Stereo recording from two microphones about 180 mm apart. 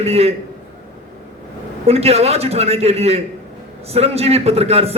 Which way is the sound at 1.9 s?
35° right (ahead or behind).